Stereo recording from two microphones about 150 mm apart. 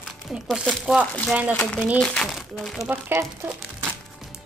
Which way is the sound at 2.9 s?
15° right (ahead or behind).